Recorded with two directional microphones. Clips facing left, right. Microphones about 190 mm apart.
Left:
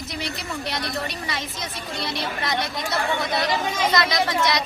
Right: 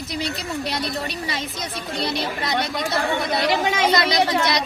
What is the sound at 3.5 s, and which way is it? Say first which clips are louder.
Speech: right 4 dB; 70° right (ahead or behind).